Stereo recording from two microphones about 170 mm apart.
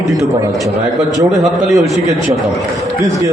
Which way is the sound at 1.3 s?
Centre (ahead or behind).